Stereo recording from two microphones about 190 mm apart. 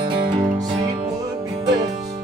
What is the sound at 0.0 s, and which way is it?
Music, 25° right (ahead or behind).